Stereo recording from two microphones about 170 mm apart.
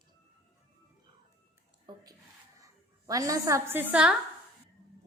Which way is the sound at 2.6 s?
20° right (ahead or behind).